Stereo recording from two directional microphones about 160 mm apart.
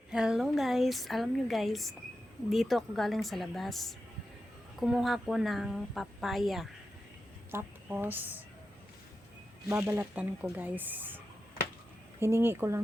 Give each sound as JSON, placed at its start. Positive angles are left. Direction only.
{"t": 0.1, "sound": "a woman's voice", "side_deg": -5}
{"t": 7.5, "sound": "a woman's voice", "side_deg": -10}
{"t": 9.6, "sound": "speech", "side_deg": -15}
{"t": 12.2, "sound": "speech", "side_deg": -15}